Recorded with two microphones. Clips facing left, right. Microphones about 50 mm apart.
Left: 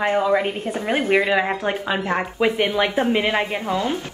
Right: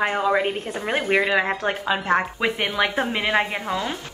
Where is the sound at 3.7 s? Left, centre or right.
Right.